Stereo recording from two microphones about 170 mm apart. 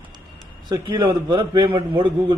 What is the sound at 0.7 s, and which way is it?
A man's voice, 25° right (ahead or behind).